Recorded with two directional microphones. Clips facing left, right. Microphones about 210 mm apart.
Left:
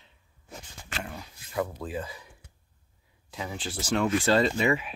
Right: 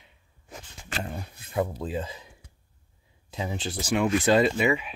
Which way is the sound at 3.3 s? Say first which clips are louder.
Right 3 dB; 20° right (ahead or behind).